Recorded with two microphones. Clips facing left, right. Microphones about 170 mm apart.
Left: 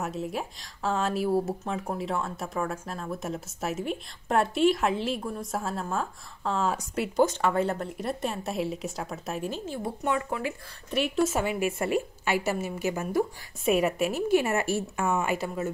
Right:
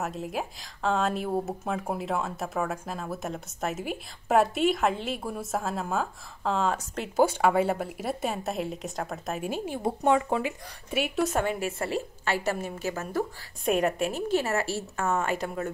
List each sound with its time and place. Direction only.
0.0 s speech: centre (ahead or behind)
7.2 s speech: 10° right (ahead or behind)
9.8 s speech: 25° right (ahead or behind)
10.9 s a woman's voice: 5° right (ahead or behind)
14.4 s a woman's voice: 20° left (ahead or behind)